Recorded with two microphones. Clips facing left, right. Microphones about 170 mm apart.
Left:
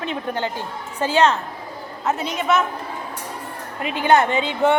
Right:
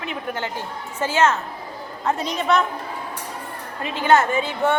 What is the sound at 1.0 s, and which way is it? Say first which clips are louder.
Speech: left 2 dB; 15° left (ahead or behind).